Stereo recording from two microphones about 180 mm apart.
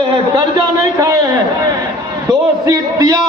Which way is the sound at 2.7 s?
20° right (ahead or behind).